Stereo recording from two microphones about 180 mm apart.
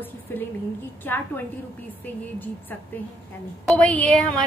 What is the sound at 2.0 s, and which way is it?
Speech, 10° left (ahead or behind).